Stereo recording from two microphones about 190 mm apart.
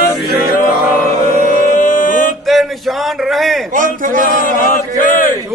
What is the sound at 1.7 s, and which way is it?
Music, 45° left (ahead or behind).